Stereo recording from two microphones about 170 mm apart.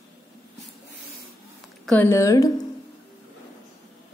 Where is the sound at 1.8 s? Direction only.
10° left (ahead or behind).